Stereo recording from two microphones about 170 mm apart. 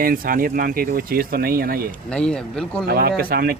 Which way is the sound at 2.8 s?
65° right (ahead or behind).